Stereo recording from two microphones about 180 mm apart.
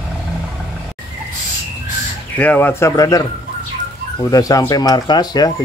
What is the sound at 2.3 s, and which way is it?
Speech, 10° left (ahead or behind).